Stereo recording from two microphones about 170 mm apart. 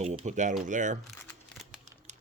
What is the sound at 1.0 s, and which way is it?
Crumpling, centre (ahead or behind).